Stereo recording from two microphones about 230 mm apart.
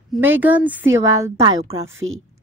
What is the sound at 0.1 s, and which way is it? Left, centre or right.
Speech, centre.